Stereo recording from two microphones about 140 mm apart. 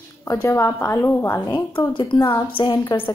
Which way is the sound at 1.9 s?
35° left (ahead or behind).